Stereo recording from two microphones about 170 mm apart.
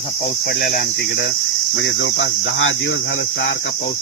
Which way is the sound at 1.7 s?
90° left.